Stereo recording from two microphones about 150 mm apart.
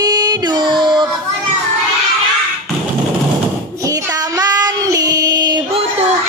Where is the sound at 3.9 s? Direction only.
25° right (ahead or behind).